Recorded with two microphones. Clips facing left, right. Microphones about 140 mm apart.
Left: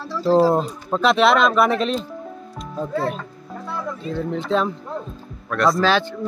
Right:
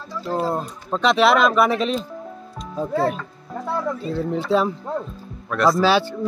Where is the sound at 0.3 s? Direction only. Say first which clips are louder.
Left 8 dB; 90° left.